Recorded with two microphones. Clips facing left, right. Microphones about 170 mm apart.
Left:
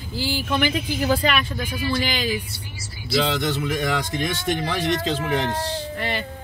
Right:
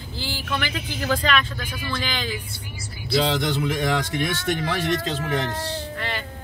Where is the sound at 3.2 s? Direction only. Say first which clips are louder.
Even; 25° right (ahead or behind).